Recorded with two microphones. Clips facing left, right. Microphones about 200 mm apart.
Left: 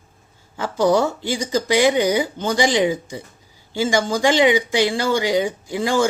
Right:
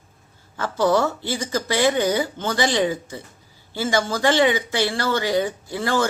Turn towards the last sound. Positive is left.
turn(degrees=15)  # may be behind; listen again after turning